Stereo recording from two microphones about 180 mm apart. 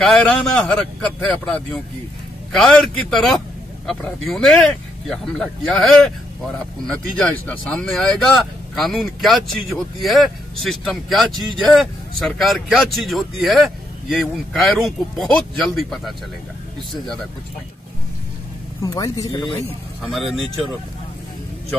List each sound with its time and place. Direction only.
0.0 s speech: 5° left (ahead or behind)
18.8 s speech: 20° left (ahead or behind)
20.0 s speech: centre (ahead or behind)